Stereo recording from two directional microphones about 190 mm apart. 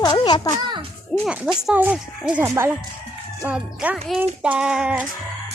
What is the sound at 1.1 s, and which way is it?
Speech, centre (ahead or behind).